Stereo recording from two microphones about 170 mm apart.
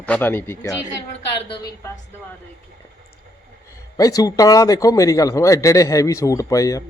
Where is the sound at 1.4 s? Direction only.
30° left (ahead or behind).